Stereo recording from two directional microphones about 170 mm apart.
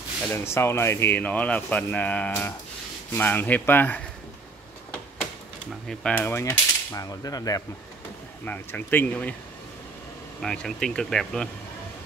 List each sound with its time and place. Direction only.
0.3 s speech: 15° left (ahead or behind)
5.9 s speech: 10° left (ahead or behind)
8.5 s speech: 10° left (ahead or behind)
10.4 s speech: 5° left (ahead or behind)